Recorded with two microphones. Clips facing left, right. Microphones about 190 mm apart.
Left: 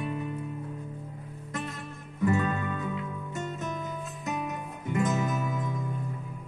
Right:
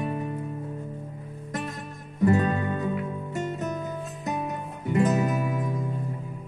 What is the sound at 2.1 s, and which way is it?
Music, 35° right (ahead or behind).